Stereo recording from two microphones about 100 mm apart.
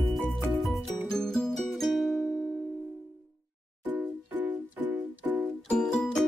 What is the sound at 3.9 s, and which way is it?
Music, 20° right (ahead or behind).